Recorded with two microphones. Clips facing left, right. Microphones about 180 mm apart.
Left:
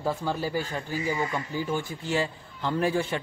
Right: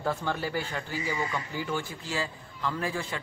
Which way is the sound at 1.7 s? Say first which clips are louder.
Left 5 dB; 25° left (ahead or behind).